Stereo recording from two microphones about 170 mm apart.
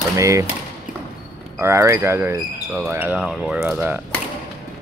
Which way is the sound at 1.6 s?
15° right (ahead or behind).